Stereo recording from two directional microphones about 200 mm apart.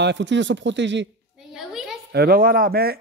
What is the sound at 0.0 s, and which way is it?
A man's voice, 65° right (ahead or behind).